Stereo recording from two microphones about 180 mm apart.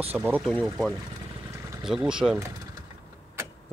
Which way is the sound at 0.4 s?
5° left (ahead or behind).